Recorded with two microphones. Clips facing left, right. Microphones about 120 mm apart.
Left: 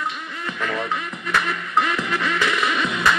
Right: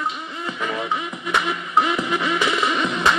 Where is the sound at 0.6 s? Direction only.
15° right (ahead or behind).